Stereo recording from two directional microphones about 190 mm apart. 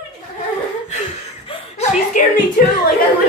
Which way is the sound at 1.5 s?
35° left (ahead or behind).